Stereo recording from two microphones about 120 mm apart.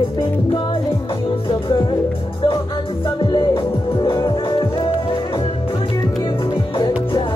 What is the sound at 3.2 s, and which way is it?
Music, 40° left (ahead or behind).